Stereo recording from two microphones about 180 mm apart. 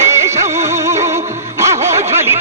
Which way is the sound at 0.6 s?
15° right (ahead or behind).